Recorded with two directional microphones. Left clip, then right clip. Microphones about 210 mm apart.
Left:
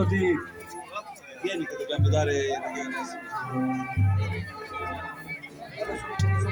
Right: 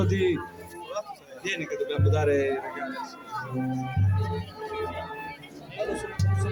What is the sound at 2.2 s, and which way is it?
Speech, 25° left (ahead or behind).